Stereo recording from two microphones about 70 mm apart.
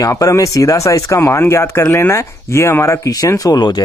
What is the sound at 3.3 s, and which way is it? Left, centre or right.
Speech, left.